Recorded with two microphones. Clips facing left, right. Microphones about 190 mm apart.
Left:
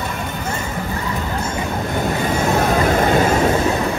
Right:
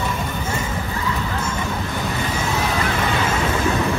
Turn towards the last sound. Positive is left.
turn(degrees=45)  # may be behind; listen again after turning